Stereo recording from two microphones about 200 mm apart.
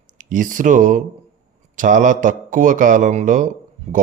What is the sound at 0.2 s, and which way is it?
A man's voice, 40° right (ahead or behind).